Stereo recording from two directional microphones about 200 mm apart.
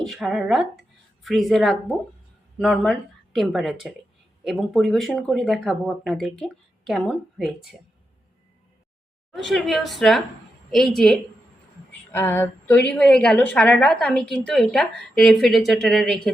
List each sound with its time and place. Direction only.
0.0 s speech: centre (ahead or behind)
9.3 s a woman's voice: centre (ahead or behind)